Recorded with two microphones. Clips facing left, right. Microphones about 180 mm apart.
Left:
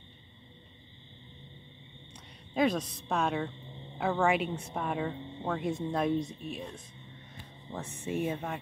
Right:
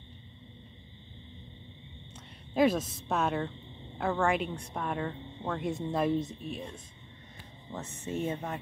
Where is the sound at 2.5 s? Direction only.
5° right (ahead or behind).